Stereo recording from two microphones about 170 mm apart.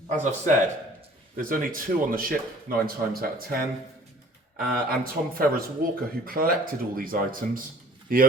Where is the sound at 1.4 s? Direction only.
55° right (ahead or behind).